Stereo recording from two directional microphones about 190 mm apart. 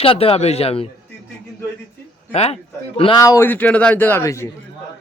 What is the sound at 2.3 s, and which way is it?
A man's voice, 35° left (ahead or behind).